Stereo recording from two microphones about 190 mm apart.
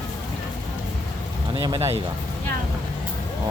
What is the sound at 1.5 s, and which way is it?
Speech, 20° right (ahead or behind).